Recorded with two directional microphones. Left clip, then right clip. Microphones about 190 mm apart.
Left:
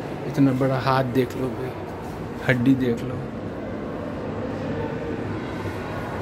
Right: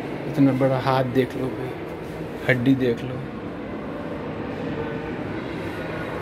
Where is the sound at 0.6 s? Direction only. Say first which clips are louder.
Right 1 dB; 20° left (ahead or behind).